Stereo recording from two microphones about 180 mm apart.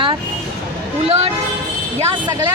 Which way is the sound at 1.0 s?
35° right (ahead or behind).